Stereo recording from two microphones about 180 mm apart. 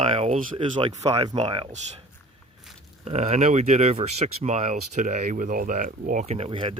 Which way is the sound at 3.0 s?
40° right (ahead or behind).